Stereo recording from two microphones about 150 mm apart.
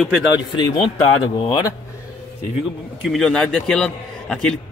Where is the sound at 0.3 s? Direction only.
30° left (ahead or behind).